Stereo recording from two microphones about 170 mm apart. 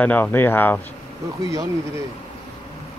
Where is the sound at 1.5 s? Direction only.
20° right (ahead or behind).